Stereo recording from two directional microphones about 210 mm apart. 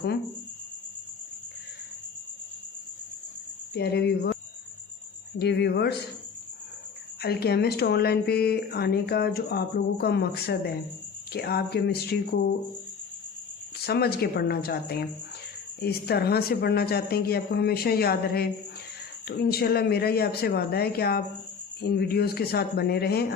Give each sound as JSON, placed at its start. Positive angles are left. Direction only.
{"t": 3.8, "sound": "speech", "side_deg": 50}
{"t": 5.4, "sound": "speech", "side_deg": 50}
{"t": 7.2, "sound": "speech", "side_deg": 50}
{"t": 13.8, "sound": "speech", "side_deg": 50}